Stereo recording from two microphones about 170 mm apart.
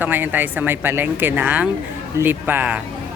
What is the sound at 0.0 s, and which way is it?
Speech, 10° right (ahead or behind).